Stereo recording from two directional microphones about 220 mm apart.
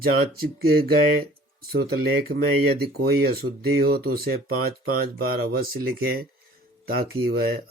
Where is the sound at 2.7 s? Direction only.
45° right (ahead or behind).